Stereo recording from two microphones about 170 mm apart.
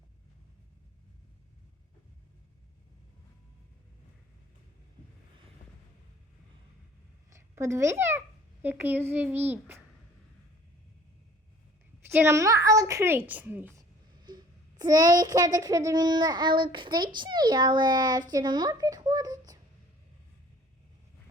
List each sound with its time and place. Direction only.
7.3 s a child's voice: 15° right (ahead or behind)
12.0 s a woman's voice: 15° right (ahead or behind)
14.3 s child singing: 25° right (ahead or behind)
17.2 s a child's voice: 25° right (ahead or behind)